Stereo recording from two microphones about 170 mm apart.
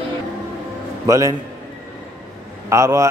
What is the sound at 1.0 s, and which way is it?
Speech, 20° right (ahead or behind).